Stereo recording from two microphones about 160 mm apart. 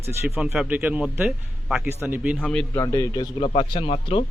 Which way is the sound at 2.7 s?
20° left (ahead or behind).